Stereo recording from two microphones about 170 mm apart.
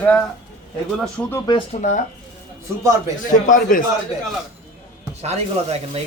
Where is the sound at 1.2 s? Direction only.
5° left (ahead or behind).